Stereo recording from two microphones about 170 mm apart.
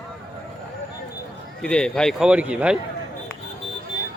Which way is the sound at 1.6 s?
5° left (ahead or behind).